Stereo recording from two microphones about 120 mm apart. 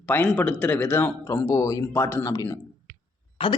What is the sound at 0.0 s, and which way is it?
Speech, 15° left (ahead or behind).